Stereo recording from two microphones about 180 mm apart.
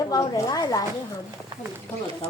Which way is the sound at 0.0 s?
20° left (ahead or behind).